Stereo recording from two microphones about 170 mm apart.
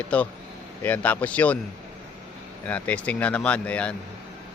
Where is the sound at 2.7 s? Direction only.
10° left (ahead or behind).